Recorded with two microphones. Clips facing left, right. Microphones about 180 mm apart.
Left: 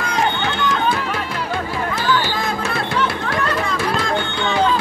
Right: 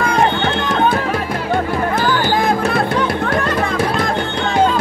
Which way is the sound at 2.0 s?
50° right (ahead or behind).